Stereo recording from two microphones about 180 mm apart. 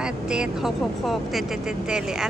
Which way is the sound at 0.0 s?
5° right (ahead or behind).